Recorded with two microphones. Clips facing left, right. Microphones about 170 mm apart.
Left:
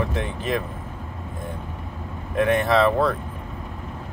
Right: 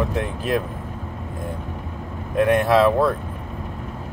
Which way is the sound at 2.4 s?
10° right (ahead or behind).